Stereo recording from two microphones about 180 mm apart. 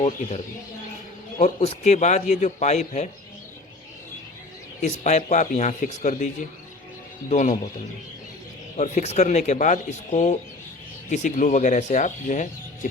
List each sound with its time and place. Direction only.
0.0 s a man's voice: 40° left (ahead or behind)
4.8 s a man's voice: 40° left (ahead or behind)
8.8 s speech: 40° left (ahead or behind)